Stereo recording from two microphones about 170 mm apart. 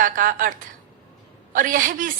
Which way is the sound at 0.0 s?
55° right (ahead or behind).